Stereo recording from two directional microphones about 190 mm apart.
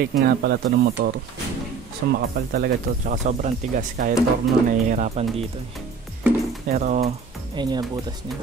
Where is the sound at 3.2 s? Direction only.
40° right (ahead or behind).